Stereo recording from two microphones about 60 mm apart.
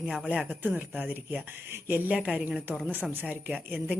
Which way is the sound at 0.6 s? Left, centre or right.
Right.